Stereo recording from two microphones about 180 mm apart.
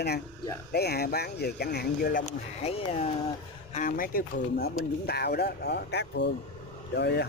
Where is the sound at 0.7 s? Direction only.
60° left (ahead or behind).